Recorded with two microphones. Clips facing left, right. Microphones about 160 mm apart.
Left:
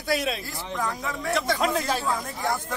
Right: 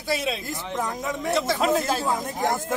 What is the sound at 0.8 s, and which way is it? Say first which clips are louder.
Speech: right 1 dB; 20° right (ahead or behind).